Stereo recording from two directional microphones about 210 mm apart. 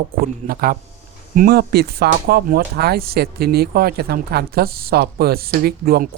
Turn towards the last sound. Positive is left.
turn(degrees=-45)  # may be behind; listen again after turning